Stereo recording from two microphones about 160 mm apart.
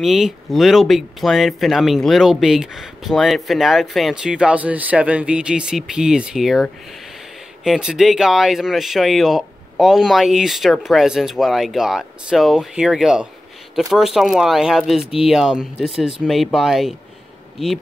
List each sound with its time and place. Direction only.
0.0 s speech: centre (ahead or behind)